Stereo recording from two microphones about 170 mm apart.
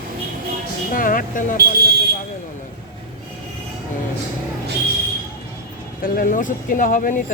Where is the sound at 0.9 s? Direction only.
55° left (ahead or behind).